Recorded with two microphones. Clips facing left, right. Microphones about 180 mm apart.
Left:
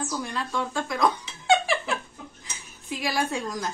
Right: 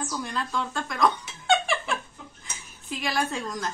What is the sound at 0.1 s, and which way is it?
Speech, 5° left (ahead or behind).